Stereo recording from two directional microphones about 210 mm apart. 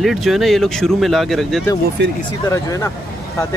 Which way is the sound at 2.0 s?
55° right (ahead or behind).